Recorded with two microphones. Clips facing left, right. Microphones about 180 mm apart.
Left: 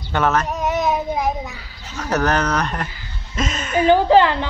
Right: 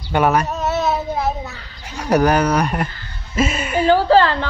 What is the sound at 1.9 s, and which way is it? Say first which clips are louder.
A woman's voice: right 4 dB; 10° right (ahead or behind).